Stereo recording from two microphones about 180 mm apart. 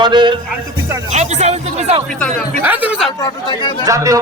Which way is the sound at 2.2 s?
5° left (ahead or behind).